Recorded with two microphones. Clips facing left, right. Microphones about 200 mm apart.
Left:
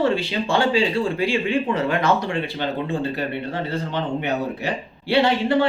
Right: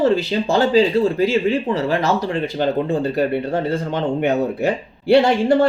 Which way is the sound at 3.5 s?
50° right (ahead or behind).